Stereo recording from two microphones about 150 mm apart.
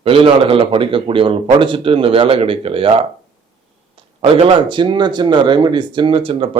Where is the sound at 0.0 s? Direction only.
35° right (ahead or behind).